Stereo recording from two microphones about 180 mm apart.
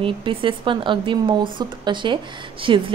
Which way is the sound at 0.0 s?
30° right (ahead or behind).